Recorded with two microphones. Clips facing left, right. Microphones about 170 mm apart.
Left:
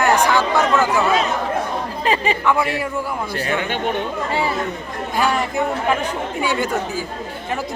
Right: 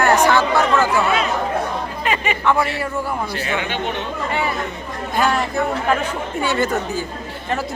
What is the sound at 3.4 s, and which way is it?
Speech, 45° left (ahead or behind).